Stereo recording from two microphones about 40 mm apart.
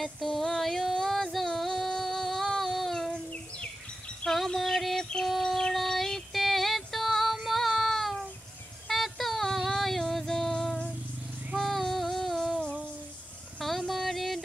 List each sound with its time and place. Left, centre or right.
0.0 s music: centre
4.2 s music: left
4.6 s music: centre
5.4 s a sound: centre
6.4 s music: centre
7.3 s child singing: centre
9.7 s music: centre
11.5 s female singing: centre
13.6 s a sound: centre